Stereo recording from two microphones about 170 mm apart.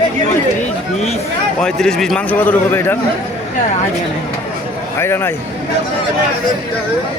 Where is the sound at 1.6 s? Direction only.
5° left (ahead or behind).